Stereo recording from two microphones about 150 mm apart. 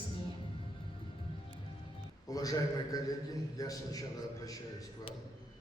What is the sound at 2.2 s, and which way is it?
A man's voice, 25° left (ahead or behind).